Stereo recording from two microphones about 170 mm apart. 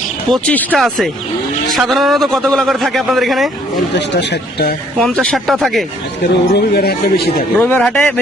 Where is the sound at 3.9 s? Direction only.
90° left.